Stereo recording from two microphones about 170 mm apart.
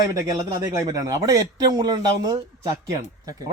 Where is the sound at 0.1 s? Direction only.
20° right (ahead or behind).